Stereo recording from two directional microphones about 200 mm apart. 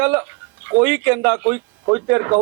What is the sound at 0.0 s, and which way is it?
Speech, 10° right (ahead or behind).